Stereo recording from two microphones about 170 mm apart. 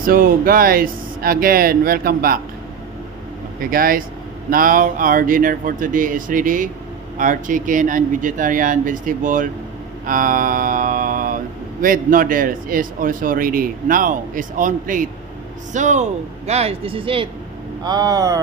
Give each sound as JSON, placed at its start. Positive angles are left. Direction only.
{"t": 0.0, "sound": "a man's voice", "side_deg": -55}
{"t": 3.7, "sound": "a man's voice", "side_deg": -60}